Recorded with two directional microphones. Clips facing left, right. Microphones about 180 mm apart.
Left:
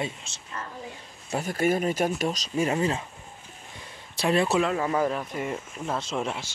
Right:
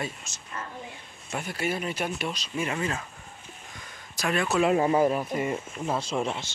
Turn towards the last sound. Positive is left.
turn(degrees=0)  # may be behind; listen again after turning